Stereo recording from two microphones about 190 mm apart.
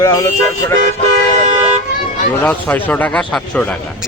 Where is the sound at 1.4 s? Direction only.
35° right (ahead or behind).